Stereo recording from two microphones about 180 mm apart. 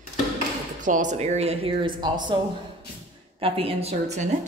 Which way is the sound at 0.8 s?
45° right (ahead or behind).